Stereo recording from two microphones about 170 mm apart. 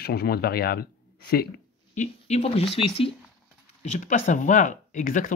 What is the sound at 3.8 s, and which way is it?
Speech, 45° left (ahead or behind).